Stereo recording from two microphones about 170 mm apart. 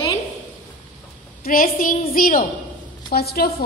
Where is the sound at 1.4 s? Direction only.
55° left (ahead or behind).